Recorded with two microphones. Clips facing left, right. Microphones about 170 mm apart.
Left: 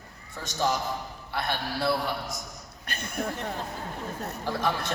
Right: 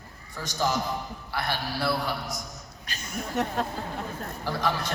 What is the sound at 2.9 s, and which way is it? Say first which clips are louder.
Speech: left 4 dB; 60° left (ahead or behind).